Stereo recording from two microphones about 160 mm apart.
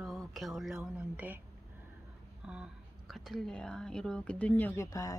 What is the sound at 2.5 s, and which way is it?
Speech, 5° right (ahead or behind).